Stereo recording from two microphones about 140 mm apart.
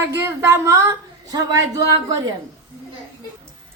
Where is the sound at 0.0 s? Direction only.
15° right (ahead or behind).